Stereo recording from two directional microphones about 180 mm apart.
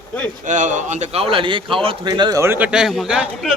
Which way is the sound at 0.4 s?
45° right (ahead or behind).